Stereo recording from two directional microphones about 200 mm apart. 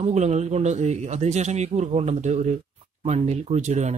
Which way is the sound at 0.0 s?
35° right (ahead or behind).